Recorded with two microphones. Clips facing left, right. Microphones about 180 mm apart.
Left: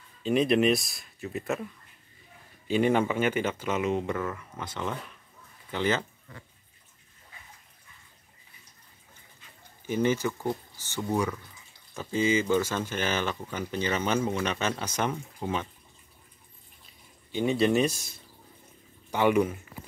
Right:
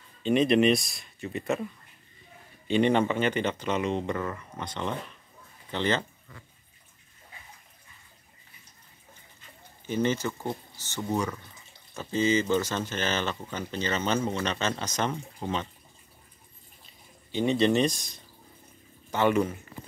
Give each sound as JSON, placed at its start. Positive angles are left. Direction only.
{"t": 0.2, "sound": "speech", "side_deg": 0}
{"t": 2.7, "sound": "speech", "side_deg": 5}
{"t": 9.8, "sound": "speech", "side_deg": 10}
{"t": 17.3, "sound": "speech", "side_deg": 5}